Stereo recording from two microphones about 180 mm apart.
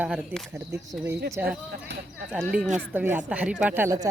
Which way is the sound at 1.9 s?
75° right (ahead or behind).